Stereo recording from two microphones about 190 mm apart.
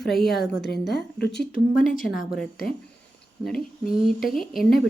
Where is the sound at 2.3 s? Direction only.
Centre (ahead or behind).